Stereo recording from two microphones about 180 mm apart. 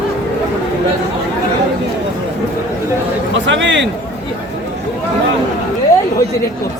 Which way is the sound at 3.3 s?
90° right.